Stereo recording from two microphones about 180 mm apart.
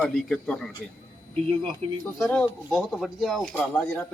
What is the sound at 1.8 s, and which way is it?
Speech, 30° right (ahead or behind).